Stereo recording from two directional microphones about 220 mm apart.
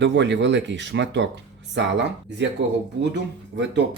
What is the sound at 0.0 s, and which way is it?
Speech, 55° right (ahead or behind).